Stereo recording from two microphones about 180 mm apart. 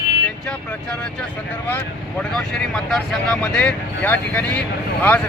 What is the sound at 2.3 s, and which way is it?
Speech, 5° left (ahead or behind).